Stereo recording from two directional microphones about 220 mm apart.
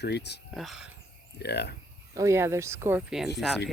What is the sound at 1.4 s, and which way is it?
Speech, 50° left (ahead or behind).